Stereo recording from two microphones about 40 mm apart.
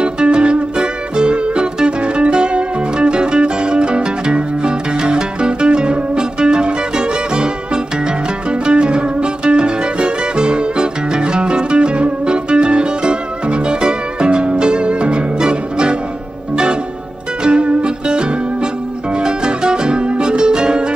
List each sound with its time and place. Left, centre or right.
0.0 s music: right
17.4 s music: right